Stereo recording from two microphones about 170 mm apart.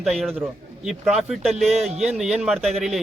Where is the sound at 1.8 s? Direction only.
40° right (ahead or behind).